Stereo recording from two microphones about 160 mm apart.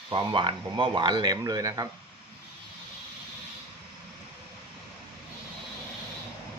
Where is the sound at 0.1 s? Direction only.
30° right (ahead or behind).